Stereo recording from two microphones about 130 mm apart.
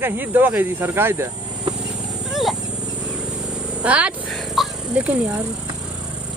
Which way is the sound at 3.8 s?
10° right (ahead or behind).